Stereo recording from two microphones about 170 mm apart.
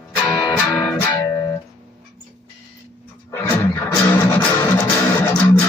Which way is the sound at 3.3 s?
10° left (ahead or behind).